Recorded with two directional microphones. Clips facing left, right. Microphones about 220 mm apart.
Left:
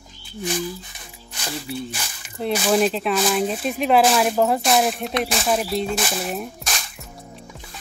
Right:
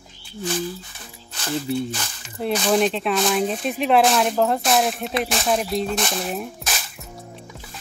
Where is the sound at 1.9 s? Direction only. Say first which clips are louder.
Right 3 dB; 10° left (ahead or behind).